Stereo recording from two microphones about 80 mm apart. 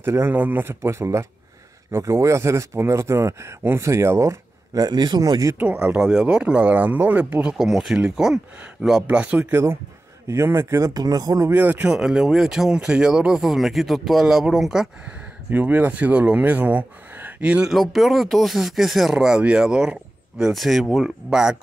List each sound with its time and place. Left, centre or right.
0.0 s speech: right
4.8 s speech: right
5.9 s speech: centre
7.4 s speech: centre
9.0 s speech: centre
9.5 s speech: right
10.9 s speech: right
11.5 s speech: centre
15.5 s speech: right
17.7 s speech: centre